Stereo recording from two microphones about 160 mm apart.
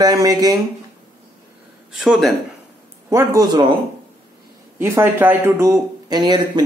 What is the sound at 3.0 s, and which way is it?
Speech, 20° right (ahead or behind).